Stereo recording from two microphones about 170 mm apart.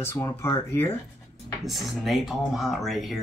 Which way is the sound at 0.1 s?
20° left (ahead or behind).